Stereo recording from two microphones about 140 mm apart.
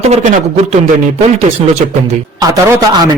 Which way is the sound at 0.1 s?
50° right (ahead or behind).